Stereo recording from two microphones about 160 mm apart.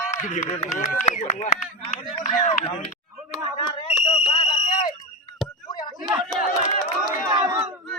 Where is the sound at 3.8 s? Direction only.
40° left (ahead or behind).